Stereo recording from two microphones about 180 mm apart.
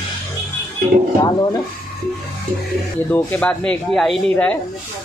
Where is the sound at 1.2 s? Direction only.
20° left (ahead or behind).